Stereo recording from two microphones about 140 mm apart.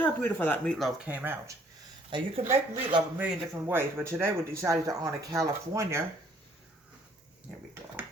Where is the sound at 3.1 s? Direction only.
10° right (ahead or behind).